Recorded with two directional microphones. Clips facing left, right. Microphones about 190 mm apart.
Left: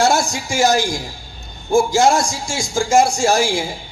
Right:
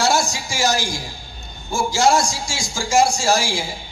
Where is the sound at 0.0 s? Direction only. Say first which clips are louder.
Left 3 dB; 55° left (ahead or behind).